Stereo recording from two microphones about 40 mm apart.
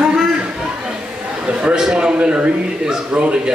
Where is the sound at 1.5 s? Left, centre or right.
Right.